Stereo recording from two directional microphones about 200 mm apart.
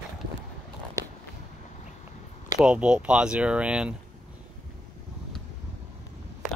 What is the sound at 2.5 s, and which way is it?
Speech, 5° right (ahead or behind).